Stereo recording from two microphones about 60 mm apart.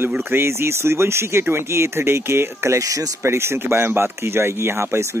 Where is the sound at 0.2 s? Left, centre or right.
Right.